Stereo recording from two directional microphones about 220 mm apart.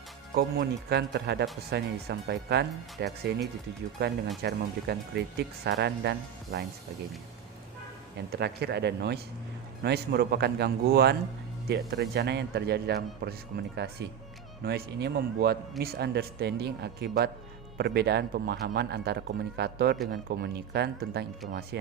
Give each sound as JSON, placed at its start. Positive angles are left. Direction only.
{"t": 0.3, "sound": "speech", "side_deg": -45}
{"t": 8.3, "sound": "speech", "side_deg": -45}